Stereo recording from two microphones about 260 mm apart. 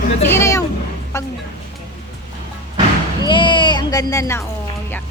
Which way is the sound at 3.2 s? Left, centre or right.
Centre.